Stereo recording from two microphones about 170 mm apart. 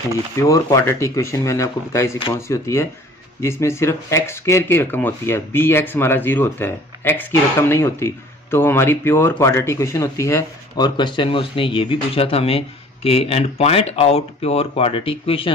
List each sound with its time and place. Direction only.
0.4 s speech: 20° left (ahead or behind)